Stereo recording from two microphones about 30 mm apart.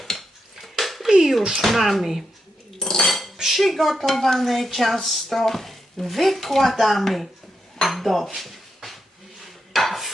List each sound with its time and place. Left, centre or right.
0.0 s dishes: centre
1.0 s speech: centre
2.7 s cutlery: centre
3.1 s cutlery: centre
3.4 s speech: centre
7.8 s dishes: centre
8.4 s a sound: centre
9.7 s dishes: centre